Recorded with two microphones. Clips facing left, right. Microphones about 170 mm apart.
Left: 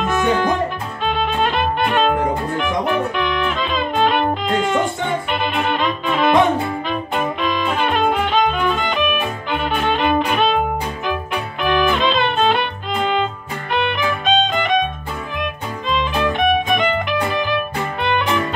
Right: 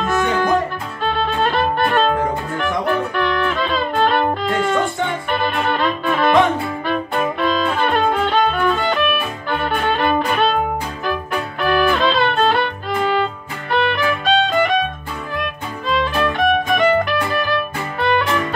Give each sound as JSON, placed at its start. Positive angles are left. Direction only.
{"t": 0.0, "sound": "music", "side_deg": 15}
{"t": 5.4, "sound": "violin", "side_deg": 15}
{"t": 7.3, "sound": "music", "side_deg": 15}
{"t": 11.6, "sound": "music", "side_deg": 20}
{"t": 15.9, "sound": "music", "side_deg": 20}